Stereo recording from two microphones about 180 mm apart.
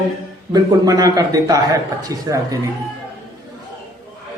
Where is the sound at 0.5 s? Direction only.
20° right (ahead or behind).